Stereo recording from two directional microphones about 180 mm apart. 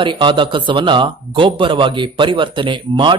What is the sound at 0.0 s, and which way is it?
Speech, 25° right (ahead or behind).